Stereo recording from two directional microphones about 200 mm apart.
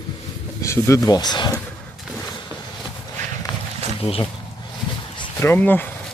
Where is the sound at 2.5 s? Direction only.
15° right (ahead or behind).